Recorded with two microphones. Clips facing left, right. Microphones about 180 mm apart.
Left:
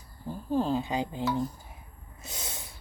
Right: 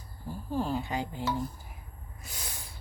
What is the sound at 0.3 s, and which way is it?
Speech, 20° left (ahead or behind).